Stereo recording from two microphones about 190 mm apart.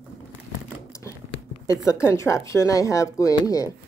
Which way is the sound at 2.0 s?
15° left (ahead or behind).